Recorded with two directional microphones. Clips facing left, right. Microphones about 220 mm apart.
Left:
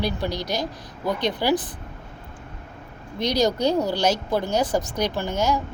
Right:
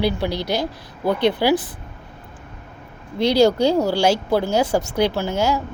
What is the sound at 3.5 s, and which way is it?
A woman's voice, 10° right (ahead or behind).